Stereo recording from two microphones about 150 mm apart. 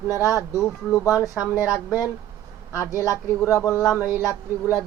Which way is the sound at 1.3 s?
10° right (ahead or behind).